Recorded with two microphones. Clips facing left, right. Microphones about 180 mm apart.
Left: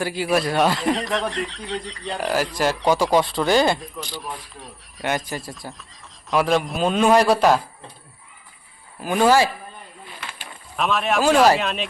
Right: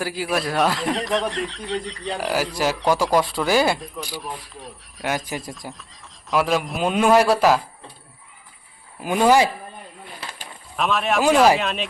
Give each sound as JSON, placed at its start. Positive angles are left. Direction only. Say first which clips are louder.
{"t": 0.0, "sound": "speech", "louder": "left 3 dB", "side_deg": 0}
{"t": 5.6, "sound": "speech", "louder": "even", "side_deg": -10}
{"t": 6.3, "sound": "speech", "louder": "left 1 dB", "side_deg": 0}
{"t": 9.0, "sound": "speech", "louder": "even", "side_deg": -15}
{"t": 10.8, "sound": "speech", "louder": "even", "side_deg": 0}